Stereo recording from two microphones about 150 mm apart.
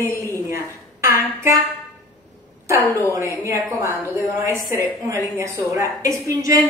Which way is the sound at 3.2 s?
20° right (ahead or behind).